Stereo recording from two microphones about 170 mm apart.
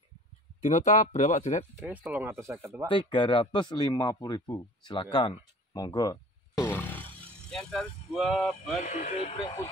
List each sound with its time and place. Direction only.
0.6 s speech: 45° left (ahead or behind)
1.8 s speech: 10° right (ahead or behind)
2.9 s speech: 30° left (ahead or behind)
5.1 s a sound: 25° left (ahead or behind); by 7.1 s 10° left (ahead or behind)
7.5 s speech: centre (ahead or behind)
8.8 s speech: 55° left (ahead or behind)
9.1 s speech: 35° left (ahead or behind)